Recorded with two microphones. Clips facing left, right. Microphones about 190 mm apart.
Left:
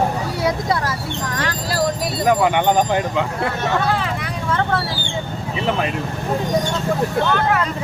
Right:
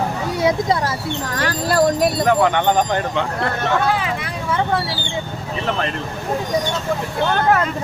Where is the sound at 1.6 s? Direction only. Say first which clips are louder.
Right 7 dB; 55° right (ahead or behind).